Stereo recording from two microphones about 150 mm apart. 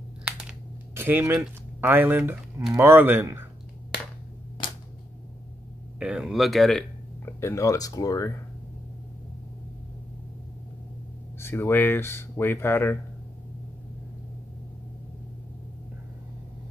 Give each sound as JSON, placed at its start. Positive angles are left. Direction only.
{"t": 0.2, "sound": "a sound", "side_deg": -10}
{"t": 2.7, "sound": "speech", "side_deg": -15}
{"t": 4.6, "sound": "a sound", "side_deg": 35}
{"t": 5.9, "sound": "speech", "side_deg": -5}
{"t": 7.2, "sound": "speech", "side_deg": 15}
{"t": 11.3, "sound": "speech", "side_deg": 15}